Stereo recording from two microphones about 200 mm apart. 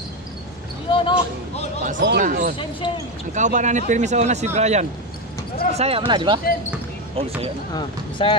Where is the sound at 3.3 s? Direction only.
35° right (ahead or behind).